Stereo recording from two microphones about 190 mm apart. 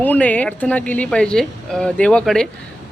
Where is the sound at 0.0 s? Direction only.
5° left (ahead or behind).